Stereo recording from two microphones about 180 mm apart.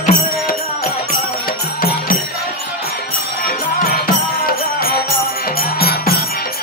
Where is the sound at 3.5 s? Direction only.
55° left (ahead or behind).